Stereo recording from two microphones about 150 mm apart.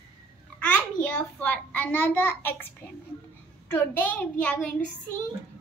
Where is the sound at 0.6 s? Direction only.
10° left (ahead or behind).